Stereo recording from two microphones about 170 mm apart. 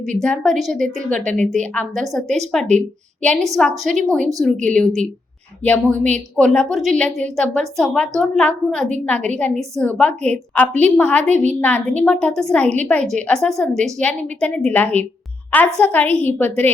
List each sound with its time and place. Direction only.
0.2 s a woman's voice: 5° left (ahead or behind)
11.3 s a woman's voice: 45° right (ahead or behind)
11.6 s a woman's voice: 10° left (ahead or behind)